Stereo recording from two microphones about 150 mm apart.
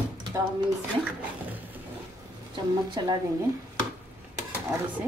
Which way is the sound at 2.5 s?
30° right (ahead or behind).